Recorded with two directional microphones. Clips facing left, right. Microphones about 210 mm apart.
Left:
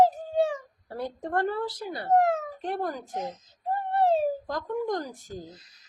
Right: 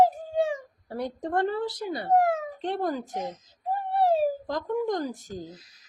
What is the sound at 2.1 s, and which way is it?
Speech, 10° right (ahead or behind).